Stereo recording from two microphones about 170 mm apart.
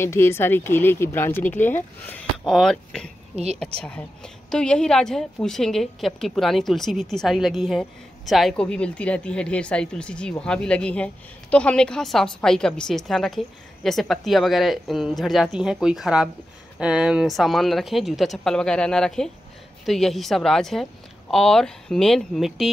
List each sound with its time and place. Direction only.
0.0 s speech: 15° left (ahead or behind)
3.3 s a woman's voice: 40° right (ahead or behind)
3.8 s a woman's voice: 5° left (ahead or behind)